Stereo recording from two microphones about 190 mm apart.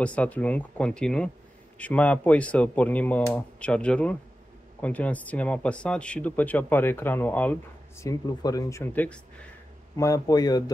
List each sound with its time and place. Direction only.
0.0 s a man's voice: 5° left (ahead or behind)